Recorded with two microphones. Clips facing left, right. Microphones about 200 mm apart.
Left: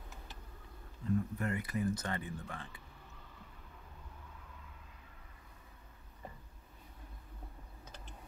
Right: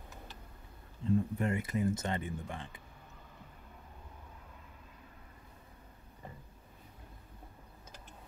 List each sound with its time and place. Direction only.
1.0 s speech: 25° right (ahead or behind)